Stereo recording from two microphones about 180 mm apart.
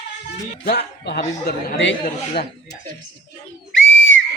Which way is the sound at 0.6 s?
70° left (ahead or behind).